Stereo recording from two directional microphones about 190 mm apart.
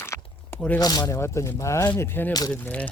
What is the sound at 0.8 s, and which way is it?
Speech, 20° left (ahead or behind).